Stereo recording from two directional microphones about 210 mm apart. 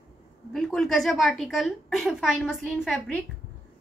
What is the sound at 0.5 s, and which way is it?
A woman's voice, centre (ahead or behind).